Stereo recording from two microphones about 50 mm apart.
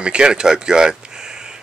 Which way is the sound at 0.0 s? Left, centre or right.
Centre.